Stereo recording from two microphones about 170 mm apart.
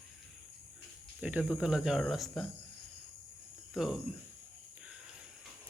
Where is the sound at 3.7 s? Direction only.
Centre (ahead or behind).